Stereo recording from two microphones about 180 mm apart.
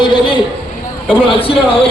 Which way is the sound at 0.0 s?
25° left (ahead or behind).